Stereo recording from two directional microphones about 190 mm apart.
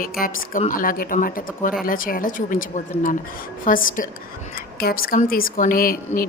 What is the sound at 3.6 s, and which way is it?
A woman's voice, 45° left (ahead or behind).